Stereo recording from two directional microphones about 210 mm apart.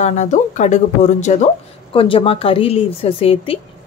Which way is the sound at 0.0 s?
35° left (ahead or behind).